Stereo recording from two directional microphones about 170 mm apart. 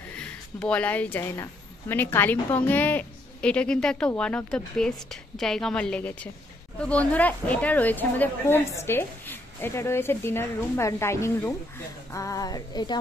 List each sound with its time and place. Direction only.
0.2 s a woman's voice: 5° left (ahead or behind)
12.1 s music: 20° left (ahead or behind)